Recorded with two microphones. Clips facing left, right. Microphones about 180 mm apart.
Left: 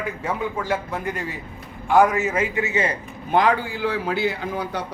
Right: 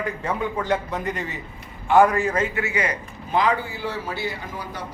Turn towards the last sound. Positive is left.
turn(degrees=70)  # may be behind; listen again after turning